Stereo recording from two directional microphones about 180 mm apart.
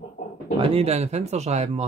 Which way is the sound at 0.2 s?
35° left (ahead or behind).